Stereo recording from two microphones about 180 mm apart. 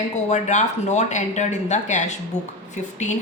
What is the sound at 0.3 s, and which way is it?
A woman's voice, 40° left (ahead or behind).